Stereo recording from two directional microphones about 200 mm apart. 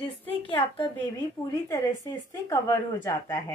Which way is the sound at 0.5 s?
25° left (ahead or behind).